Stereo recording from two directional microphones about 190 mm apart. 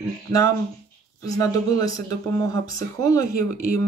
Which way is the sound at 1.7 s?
20° left (ahead or behind).